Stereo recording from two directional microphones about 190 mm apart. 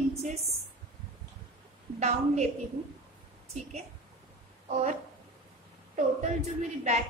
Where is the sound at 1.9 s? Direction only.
35° right (ahead or behind).